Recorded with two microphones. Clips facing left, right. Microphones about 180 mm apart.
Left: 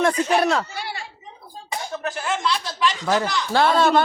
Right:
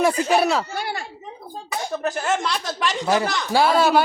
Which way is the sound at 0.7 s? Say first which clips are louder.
Right 4 dB; 50° right (ahead or behind).